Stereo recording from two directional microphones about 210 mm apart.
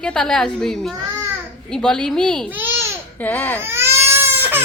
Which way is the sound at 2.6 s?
10° right (ahead or behind).